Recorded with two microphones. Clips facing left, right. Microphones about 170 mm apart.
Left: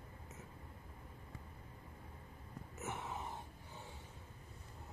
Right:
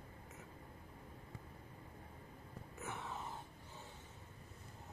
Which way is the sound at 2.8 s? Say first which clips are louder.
Left 2 dB; 20° left (ahead or behind).